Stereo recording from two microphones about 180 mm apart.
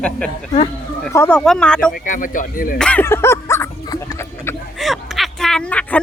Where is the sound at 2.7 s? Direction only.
5° left (ahead or behind).